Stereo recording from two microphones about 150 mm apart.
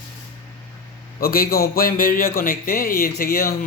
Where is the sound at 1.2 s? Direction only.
80° left.